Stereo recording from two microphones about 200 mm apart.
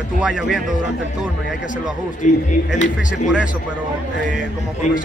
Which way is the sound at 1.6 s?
40° left (ahead or behind).